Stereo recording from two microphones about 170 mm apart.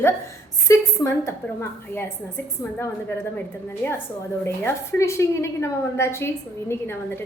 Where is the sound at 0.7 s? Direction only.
15° left (ahead or behind).